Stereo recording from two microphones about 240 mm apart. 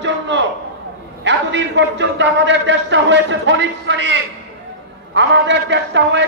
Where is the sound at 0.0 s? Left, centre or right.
Right.